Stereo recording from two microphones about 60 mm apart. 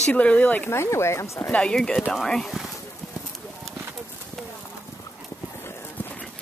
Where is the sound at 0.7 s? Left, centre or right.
Left.